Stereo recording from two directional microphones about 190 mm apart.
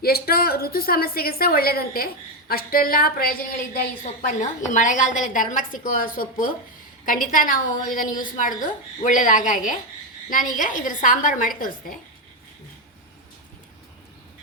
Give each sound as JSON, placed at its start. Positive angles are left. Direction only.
{"t": 0.0, "sound": "a woman's voice", "side_deg": 55}
{"t": 4.0, "sound": "a woman's voice", "side_deg": 40}